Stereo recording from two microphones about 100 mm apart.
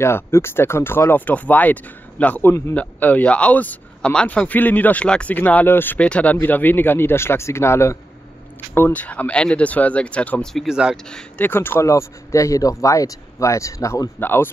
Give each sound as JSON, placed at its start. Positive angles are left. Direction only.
{"t": 0.0, "sound": "speech", "side_deg": 25}
{"t": 8.7, "sound": "speech", "side_deg": 15}
{"t": 10.5, "sound": "speech", "side_deg": 0}
{"t": 11.4, "sound": "speech", "side_deg": 20}
{"t": 14.2, "sound": "speech", "side_deg": 20}